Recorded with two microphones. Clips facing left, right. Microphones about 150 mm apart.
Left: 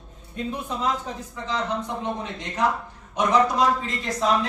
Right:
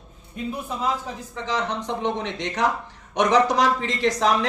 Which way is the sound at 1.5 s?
75° right (ahead or behind).